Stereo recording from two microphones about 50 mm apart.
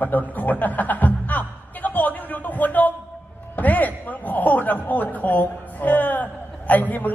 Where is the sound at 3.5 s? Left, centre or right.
Left.